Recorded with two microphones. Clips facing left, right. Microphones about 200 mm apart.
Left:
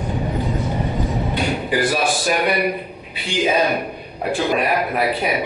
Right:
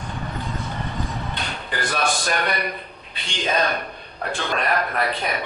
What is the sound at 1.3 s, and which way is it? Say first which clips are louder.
Speech: left 10 dB; 10° left (ahead or behind).